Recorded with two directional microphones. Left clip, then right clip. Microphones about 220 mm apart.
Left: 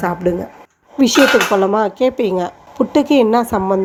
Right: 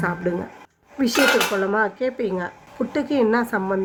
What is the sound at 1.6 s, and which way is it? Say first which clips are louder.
A woman's voice: left 7 dB; 20° left (ahead or behind).